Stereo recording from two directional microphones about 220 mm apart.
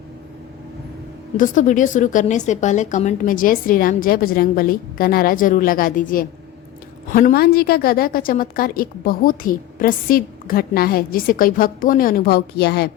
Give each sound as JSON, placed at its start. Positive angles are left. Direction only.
{"t": 1.4, "sound": "a woman's voice", "side_deg": 35}